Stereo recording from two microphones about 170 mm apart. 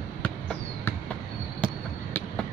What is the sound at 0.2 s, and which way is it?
Basketball bounce, 10° left (ahead or behind).